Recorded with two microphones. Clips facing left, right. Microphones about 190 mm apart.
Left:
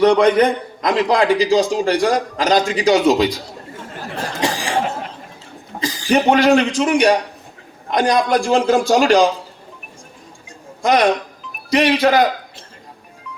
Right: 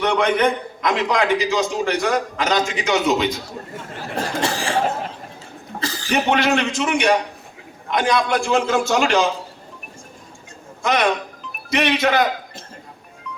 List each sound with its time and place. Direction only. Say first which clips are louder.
0.0 s a man's voice: left 6 dB; 35° left (ahead or behind)
4.4 s cough: left 3 dB; 15° left (ahead or behind)
5.8 s a sound: left 4 dB; 15° left (ahead or behind)
6.1 s a man's voice: left 6 dB; 35° left (ahead or behind)
10.8 s a man's voice: left 4 dB; 35° left (ahead or behind)